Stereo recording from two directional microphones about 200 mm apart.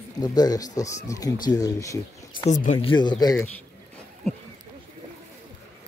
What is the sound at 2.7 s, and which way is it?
Speech, 20° left (ahead or behind).